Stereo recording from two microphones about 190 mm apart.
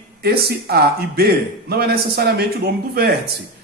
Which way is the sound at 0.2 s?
55° right (ahead or behind).